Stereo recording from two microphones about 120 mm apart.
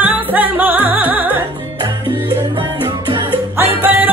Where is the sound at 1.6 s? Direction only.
40° right (ahead or behind).